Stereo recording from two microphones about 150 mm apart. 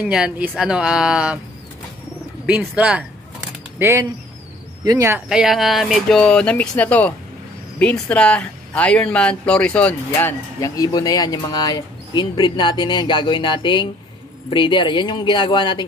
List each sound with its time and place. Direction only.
0.0 s speech: 10° right (ahead or behind)
2.7 s speech: 5° right (ahead or behind)
3.7 s speech: 20° right (ahead or behind)
5.3 s speech: centre (ahead or behind)
10.8 s speech: 25° left (ahead or behind)